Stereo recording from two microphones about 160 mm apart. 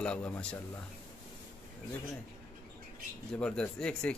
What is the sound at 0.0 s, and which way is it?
Speech, 5° left (ahead or behind).